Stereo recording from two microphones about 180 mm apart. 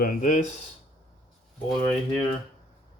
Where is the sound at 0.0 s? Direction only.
45° left (ahead or behind).